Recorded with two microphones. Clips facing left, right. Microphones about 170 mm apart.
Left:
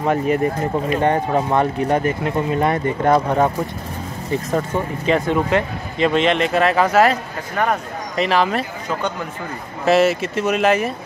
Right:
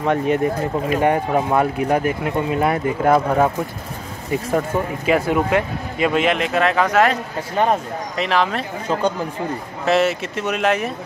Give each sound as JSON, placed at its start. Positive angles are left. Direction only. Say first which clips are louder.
{"t": 0.0, "sound": "speech", "louder": "even", "side_deg": 0}
{"t": 0.9, "sound": "speech", "louder": "right 1 dB", "side_deg": -10}
{"t": 7.5, "sound": "speech", "louder": "right 2 dB", "side_deg": -25}
{"t": 8.2, "sound": "speech", "louder": "left 2 dB", "side_deg": 0}
{"t": 9.8, "sound": "speech", "louder": "left 3 dB", "side_deg": 0}